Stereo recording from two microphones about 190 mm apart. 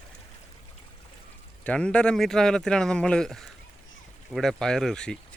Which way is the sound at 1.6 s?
5° left (ahead or behind).